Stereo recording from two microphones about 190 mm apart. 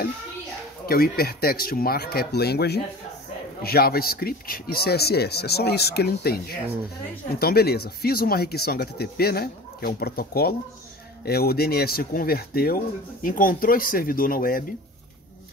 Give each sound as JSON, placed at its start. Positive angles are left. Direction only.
{"t": 0.8, "sound": "speech", "side_deg": 50}